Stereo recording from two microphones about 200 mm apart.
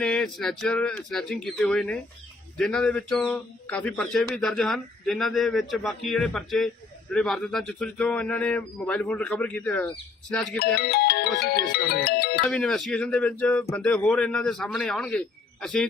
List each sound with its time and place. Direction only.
0.0 s speech: 5° left (ahead or behind)
10.8 s ringtone: 50° left (ahead or behind)
12.5 s speech: centre (ahead or behind)